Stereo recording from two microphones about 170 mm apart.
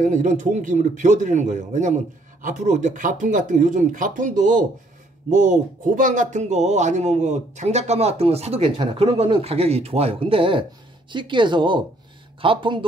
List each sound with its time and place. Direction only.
0.0 s speech: 50° right (ahead or behind); by 12.8 s 30° right (ahead or behind)